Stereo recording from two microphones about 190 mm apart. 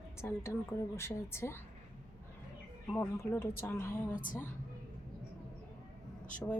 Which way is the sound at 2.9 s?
10° left (ahead or behind).